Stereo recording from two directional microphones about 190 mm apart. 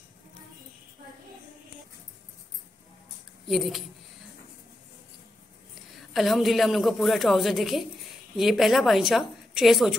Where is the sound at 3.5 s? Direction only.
Centre (ahead or behind).